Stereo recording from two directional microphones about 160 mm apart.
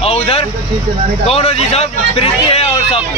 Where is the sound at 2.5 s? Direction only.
40° left (ahead or behind).